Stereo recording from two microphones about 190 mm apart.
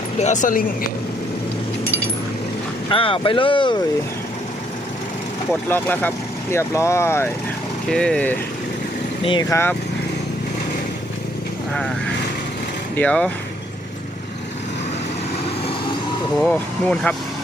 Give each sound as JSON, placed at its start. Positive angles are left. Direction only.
{"t": 0.2, "sound": "speech", "side_deg": 40}
{"t": 2.9, "sound": "speech", "side_deg": 30}
{"t": 5.6, "sound": "speech", "side_deg": 10}
{"t": 9.2, "sound": "speech", "side_deg": 25}
{"t": 13.0, "sound": "speech", "side_deg": 5}
{"t": 16.4, "sound": "speech", "side_deg": 5}